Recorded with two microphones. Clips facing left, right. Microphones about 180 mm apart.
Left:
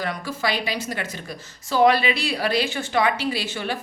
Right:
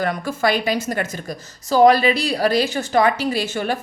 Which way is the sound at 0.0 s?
50° right (ahead or behind).